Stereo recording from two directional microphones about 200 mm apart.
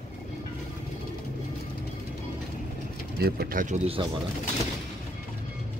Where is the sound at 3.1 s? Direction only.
50° right (ahead or behind); by 4.1 s 30° right (ahead or behind).